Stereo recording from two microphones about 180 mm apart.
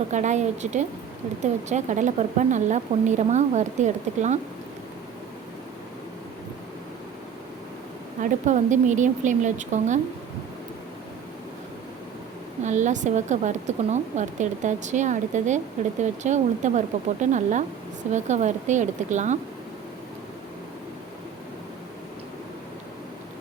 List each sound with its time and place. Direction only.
0.1 s speech: 40° right (ahead or behind)
8.2 s a woman's voice: 40° right (ahead or behind)
12.6 s speech: 40° right (ahead or behind)